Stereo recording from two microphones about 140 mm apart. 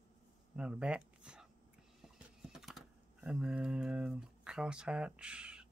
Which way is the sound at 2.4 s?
Centre (ahead or behind).